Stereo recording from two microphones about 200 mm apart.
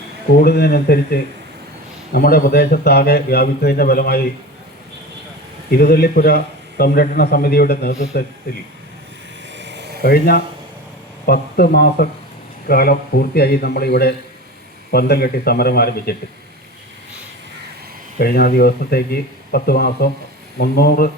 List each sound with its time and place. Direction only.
0.4 s speech: 55° left (ahead or behind)
5.7 s speech: 50° left (ahead or behind)
9.6 s a sound: 60° right (ahead or behind)
10.0 s speech: 50° left (ahead or behind)
18.2 s speech: 50° left (ahead or behind)